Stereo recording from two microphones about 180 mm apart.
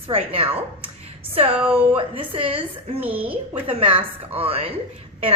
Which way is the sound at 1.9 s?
30° right (ahead or behind).